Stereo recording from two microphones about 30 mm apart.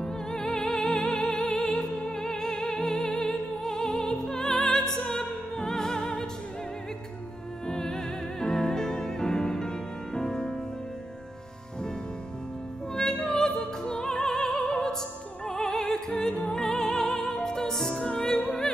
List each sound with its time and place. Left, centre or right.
0.0 s music: left
7.6 s music: centre
12.9 s music: centre
14.4 s opera: centre
14.7 s opera: left
16.1 s music: left
16.3 s music: centre
18.1 s opera: left